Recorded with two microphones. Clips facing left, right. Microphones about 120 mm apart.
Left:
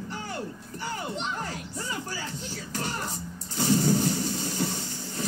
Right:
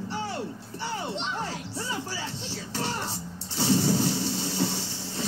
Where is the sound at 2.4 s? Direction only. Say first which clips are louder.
Right 1 dB; 30° right (ahead or behind).